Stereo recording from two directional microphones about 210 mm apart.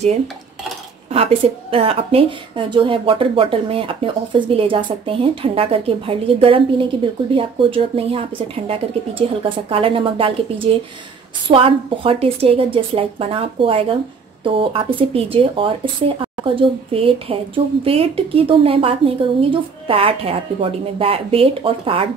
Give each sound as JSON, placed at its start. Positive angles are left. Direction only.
{"t": 1.1, "sound": "a woman's voice", "side_deg": -25}